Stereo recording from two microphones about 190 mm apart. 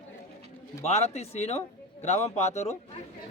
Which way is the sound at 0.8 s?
35° left (ahead or behind).